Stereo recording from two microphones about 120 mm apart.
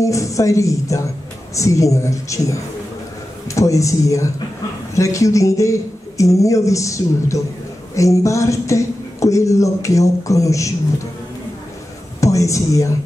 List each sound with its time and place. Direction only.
0.0 s speech: 25° left (ahead or behind)
12.2 s speech: 25° left (ahead or behind)